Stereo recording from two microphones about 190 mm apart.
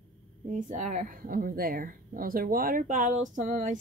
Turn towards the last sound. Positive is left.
turn(degrees=-40)  # may be behind; listen again after turning